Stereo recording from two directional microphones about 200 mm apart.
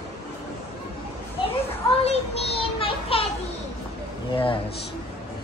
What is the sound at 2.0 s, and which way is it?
Child singing, 30° left (ahead or behind).